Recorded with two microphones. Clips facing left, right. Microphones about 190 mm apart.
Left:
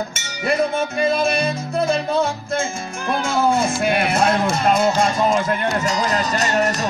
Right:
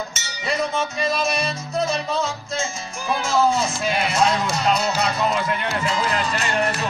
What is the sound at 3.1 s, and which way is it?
Speech, 55° left (ahead or behind).